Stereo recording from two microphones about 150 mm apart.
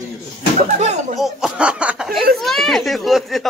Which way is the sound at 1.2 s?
5° right (ahead or behind).